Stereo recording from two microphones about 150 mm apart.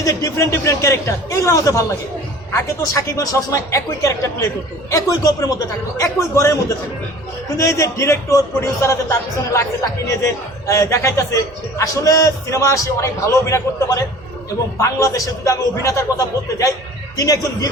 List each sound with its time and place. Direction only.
0.0 s a man's voice: 20° left (ahead or behind)
10.7 s a man's voice: 20° left (ahead or behind)